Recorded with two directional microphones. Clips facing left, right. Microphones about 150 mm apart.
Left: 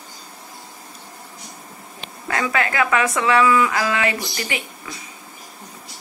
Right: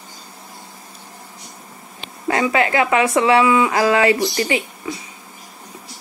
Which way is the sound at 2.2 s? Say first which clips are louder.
Right 5 dB; 25° right (ahead or behind).